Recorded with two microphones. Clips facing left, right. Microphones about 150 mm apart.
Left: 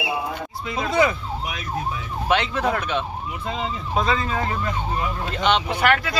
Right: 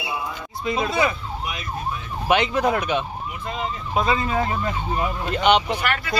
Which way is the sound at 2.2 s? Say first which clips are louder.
Right 2 dB; 15° right (ahead or behind).